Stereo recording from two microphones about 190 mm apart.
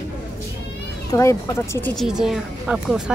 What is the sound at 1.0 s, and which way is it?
Speech, 15° left (ahead or behind).